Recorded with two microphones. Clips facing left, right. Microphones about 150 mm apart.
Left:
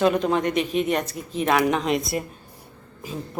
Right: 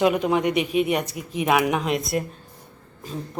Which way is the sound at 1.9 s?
Centre (ahead or behind).